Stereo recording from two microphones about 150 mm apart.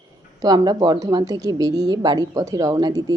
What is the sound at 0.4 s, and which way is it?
A woman's voice, 25° right (ahead or behind).